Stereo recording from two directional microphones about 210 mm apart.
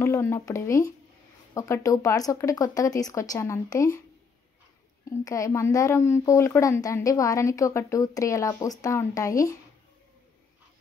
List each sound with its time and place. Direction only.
0.0 s a woman's voice: 10° left (ahead or behind)
5.1 s a woman's voice: 15° left (ahead or behind)